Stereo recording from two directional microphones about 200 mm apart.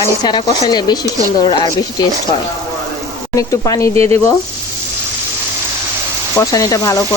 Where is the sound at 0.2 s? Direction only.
20° left (ahead or behind).